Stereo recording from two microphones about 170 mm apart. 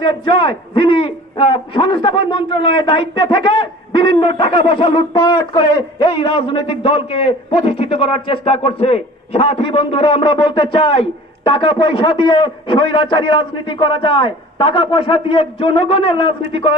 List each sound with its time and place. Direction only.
0.0 s a man's voice: 30° left (ahead or behind)